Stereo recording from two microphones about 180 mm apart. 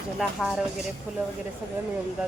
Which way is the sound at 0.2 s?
5° right (ahead or behind).